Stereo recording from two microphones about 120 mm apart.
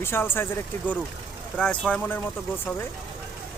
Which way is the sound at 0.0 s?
20° left (ahead or behind).